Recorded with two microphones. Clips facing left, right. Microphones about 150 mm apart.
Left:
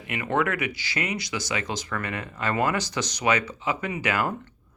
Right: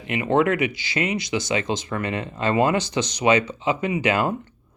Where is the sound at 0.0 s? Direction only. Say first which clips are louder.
Right 6 dB; 25° right (ahead or behind).